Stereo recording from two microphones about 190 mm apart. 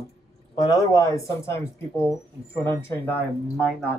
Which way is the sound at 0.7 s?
15° left (ahead or behind).